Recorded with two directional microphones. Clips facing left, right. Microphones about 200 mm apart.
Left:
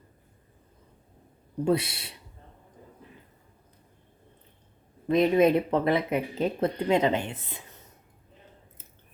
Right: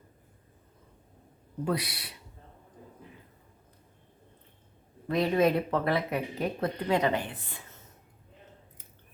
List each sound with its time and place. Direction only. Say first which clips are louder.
1.6 s speech: left 6 dB; 25° left (ahead or behind)
5.0 s speech: left 4 dB; 20° left (ahead or behind)